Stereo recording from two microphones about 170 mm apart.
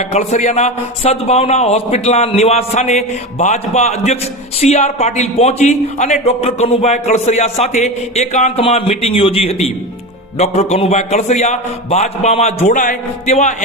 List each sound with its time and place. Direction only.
0.0 s a man's voice: 40° left (ahead or behind)